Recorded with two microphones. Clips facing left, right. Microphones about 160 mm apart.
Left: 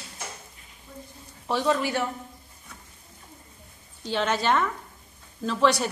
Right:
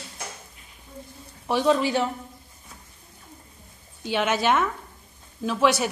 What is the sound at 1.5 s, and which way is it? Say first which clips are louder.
Speech: right 3 dB; 15° right (ahead or behind).